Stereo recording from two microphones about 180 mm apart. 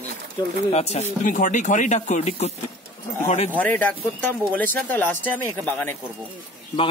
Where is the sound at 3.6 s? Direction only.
10° left (ahead or behind).